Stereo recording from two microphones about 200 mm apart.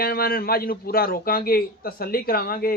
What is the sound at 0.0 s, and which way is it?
A man's voice, 50° left (ahead or behind).